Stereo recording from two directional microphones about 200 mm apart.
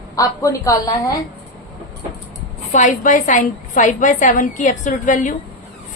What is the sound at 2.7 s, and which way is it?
A woman's voice, 40° left (ahead or behind).